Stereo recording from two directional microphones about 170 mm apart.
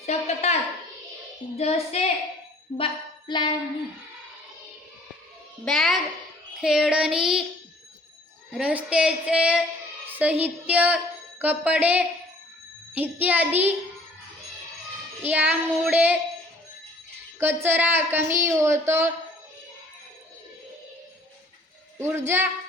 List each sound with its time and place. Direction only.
0.0 s a sound: 40° left (ahead or behind)
1.5 s a woman's voice: 40° left (ahead or behind)
2.7 s a sound: 30° left (ahead or behind)
5.6 s child singing: centre (ahead or behind)
8.5 s a woman's voice: 5° right (ahead or behind)
15.2 s a woman's voice: 10° right (ahead or behind)
17.4 s a woman's voice: 10° right (ahead or behind)
21.9 s a woman's voice: 15° right (ahead or behind)